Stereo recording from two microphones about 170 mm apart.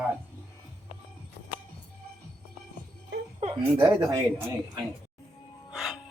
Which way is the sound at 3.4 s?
25° right (ahead or behind).